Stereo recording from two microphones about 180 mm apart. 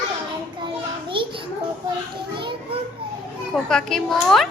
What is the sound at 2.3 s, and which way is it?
Children playing, 25° right (ahead or behind).